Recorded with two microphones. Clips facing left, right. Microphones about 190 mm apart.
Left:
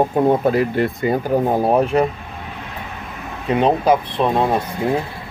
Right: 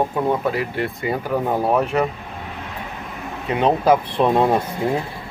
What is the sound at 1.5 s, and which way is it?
Speech, 30° left (ahead or behind).